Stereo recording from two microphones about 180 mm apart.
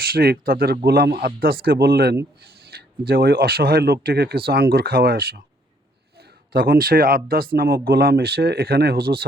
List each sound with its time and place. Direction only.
0.0 s speech: 55° right (ahead or behind)
2.4 s a sound: 60° right (ahead or behind)
3.1 s speech: 60° right (ahead or behind)
6.5 s speech: 55° right (ahead or behind)